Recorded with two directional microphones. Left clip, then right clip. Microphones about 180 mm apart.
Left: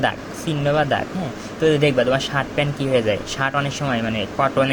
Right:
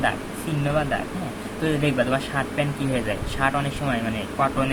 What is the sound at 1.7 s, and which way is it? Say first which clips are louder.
Speech: left 6 dB; 35° left (ahead or behind).